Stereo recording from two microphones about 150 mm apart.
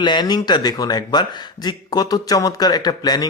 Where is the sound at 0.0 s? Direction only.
30° left (ahead or behind).